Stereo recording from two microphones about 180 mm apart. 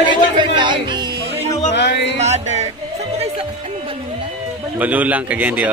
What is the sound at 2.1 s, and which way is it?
Music, 40° right (ahead or behind).